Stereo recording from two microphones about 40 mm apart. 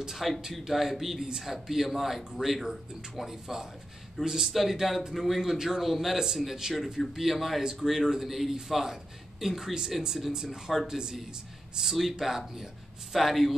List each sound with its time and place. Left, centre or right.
0.0 s a man's voice: centre
7.0 s a man's voice: centre